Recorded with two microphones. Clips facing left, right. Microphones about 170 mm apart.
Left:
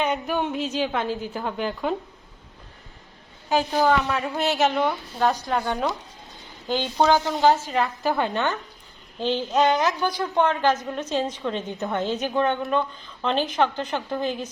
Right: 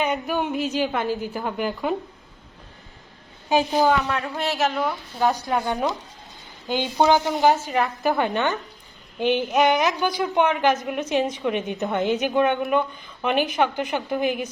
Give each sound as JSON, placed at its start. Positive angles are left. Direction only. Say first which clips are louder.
{"t": 0.0, "sound": "a woman's voice", "louder": "right 1 dB", "side_deg": -5}
{"t": 3.5, "sound": "speech", "louder": "right 2 dB", "side_deg": -15}
{"t": 4.1, "sound": "a woman's voice", "louder": "left 1 dB", "side_deg": 0}